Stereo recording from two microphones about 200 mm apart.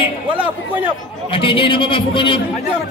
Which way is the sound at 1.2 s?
25° left (ahead or behind).